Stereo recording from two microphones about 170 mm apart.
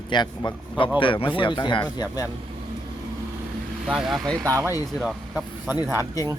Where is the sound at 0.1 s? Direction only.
25° left (ahead or behind).